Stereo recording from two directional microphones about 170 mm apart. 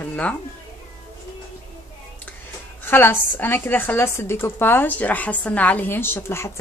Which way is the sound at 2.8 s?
15° left (ahead or behind).